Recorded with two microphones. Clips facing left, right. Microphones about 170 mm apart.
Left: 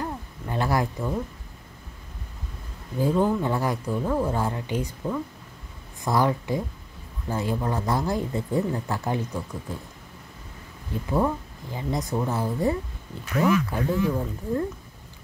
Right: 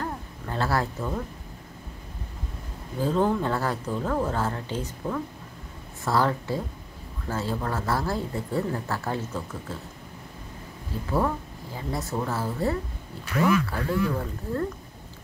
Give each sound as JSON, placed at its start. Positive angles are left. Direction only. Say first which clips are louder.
{"t": 0.0, "sound": "a sound", "louder": "left 1 dB", "side_deg": 15}
{"t": 3.0, "sound": "speech", "louder": "left 1 dB", "side_deg": 10}
{"t": 11.1, "sound": "speech", "louder": "left 2 dB", "side_deg": 15}